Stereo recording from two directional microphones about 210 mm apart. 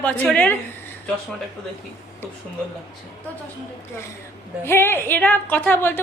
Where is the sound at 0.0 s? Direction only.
5° left (ahead or behind).